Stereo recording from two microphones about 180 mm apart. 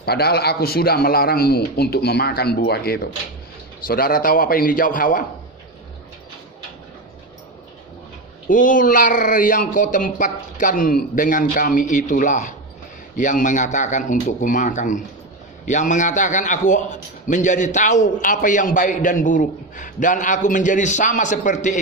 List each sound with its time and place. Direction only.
0.0 s a man's voice: 60° left (ahead or behind)
8.4 s a man's voice: 45° left (ahead or behind)